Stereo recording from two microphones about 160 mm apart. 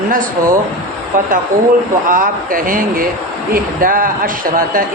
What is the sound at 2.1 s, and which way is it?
A man's voice, 60° right (ahead or behind).